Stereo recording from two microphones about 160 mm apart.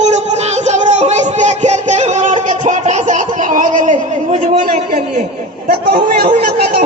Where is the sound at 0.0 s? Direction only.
45° right (ahead or behind).